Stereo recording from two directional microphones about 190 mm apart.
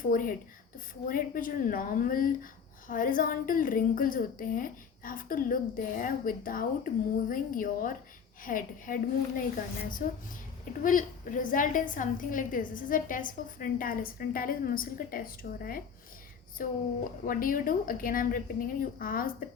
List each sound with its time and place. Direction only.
0.0 s speech: 45° left (ahead or behind)
10.0 s speech: 45° left (ahead or behind)